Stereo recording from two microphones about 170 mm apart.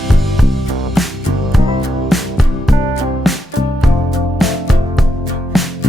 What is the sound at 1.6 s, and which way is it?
Music, 20° right (ahead or behind).